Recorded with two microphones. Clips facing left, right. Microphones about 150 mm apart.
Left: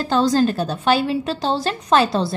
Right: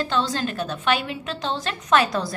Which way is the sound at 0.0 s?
40° left (ahead or behind).